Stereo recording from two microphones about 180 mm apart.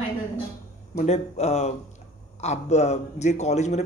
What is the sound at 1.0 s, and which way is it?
A man's voice, 35° left (ahead or behind).